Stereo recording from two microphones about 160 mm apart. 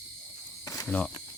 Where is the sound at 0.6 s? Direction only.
20° left (ahead or behind).